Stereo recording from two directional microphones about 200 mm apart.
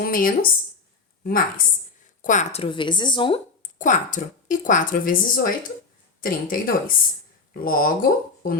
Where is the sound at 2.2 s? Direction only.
40° left (ahead or behind).